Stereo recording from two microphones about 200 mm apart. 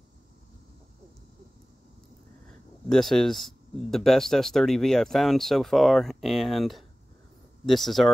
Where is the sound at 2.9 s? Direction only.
Centre (ahead or behind).